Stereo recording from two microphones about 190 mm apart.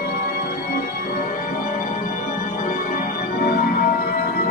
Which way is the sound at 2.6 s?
50° left (ahead or behind).